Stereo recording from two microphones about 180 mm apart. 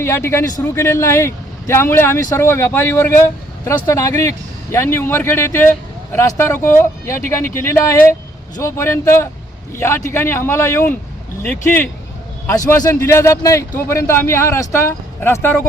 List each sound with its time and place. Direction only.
0.0 s a man's voice: 15° left (ahead or behind)